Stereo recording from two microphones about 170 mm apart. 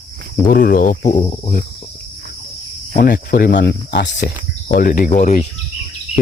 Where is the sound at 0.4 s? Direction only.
55° left (ahead or behind); by 1.4 s 40° left (ahead or behind).